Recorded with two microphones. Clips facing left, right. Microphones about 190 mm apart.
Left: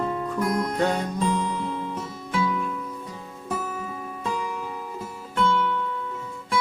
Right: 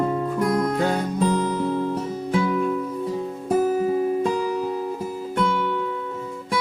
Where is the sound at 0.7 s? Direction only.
5° right (ahead or behind).